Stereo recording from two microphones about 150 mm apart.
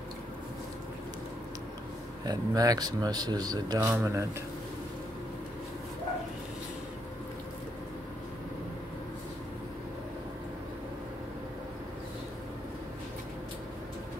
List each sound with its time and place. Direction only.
2.2 s speech: 25° right (ahead or behind)